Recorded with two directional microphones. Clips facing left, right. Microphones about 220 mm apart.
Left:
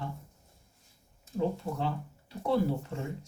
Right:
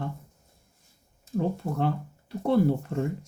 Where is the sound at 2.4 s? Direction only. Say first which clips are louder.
Right 6 dB; 55° right (ahead or behind).